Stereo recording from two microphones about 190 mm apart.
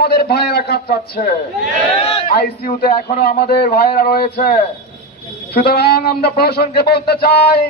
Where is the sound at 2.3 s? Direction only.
55° left (ahead or behind).